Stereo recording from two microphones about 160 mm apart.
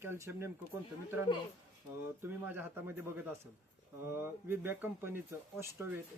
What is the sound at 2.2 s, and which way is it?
Speech, 15° right (ahead or behind).